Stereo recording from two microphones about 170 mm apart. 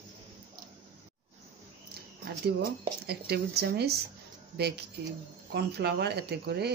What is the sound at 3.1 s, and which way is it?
Speech, 70° right (ahead or behind).